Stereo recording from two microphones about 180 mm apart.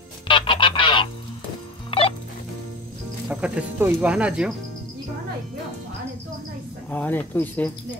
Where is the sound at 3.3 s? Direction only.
5° right (ahead or behind).